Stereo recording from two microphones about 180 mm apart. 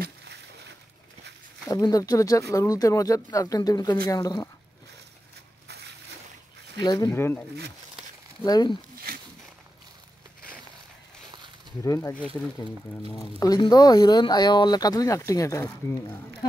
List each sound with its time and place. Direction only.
0.0 s a sound: 70° right (ahead or behind)
1.7 s speech: 20° left (ahead or behind)
6.8 s speech: 20° left (ahead or behind)
9.1 s a sound: 55° right (ahead or behind)
11.8 s speech: 20° left (ahead or behind)
13.4 s speech: 20° left (ahead or behind)